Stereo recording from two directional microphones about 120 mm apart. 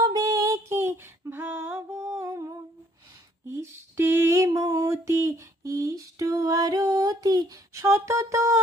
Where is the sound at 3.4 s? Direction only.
20° right (ahead or behind).